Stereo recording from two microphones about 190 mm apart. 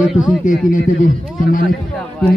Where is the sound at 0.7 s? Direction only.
45° left (ahead or behind).